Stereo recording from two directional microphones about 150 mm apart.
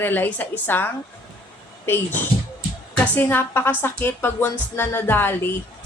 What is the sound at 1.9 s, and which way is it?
Speech, 15° left (ahead or behind).